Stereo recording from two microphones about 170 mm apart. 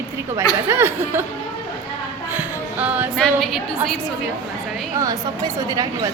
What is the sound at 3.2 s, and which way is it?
Speech, centre (ahead or behind).